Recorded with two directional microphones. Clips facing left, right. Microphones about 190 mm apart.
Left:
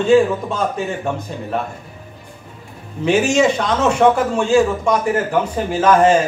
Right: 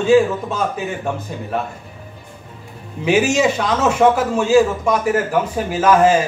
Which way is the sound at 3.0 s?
5° right (ahead or behind).